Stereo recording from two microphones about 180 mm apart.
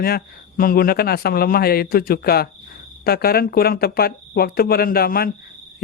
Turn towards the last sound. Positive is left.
turn(degrees=55)  # may be behind; listen again after turning